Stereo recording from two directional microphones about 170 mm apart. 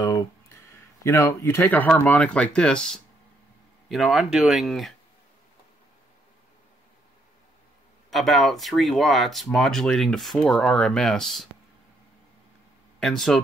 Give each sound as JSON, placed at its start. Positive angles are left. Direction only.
{"t": 0.0, "sound": "speech", "side_deg": 15}
{"t": 8.1, "sound": "speech", "side_deg": 0}
{"t": 13.0, "sound": "speech", "side_deg": 0}